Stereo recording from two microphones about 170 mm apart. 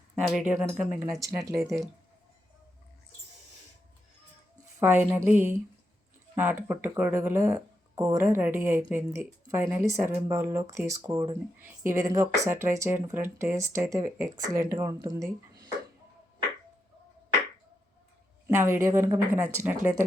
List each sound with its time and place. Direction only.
0.3 s speech: centre (ahead or behind); by 1.7 s 20° right (ahead or behind)
4.8 s speech: 15° right (ahead or behind)
18.4 s speech: 15° right (ahead or behind)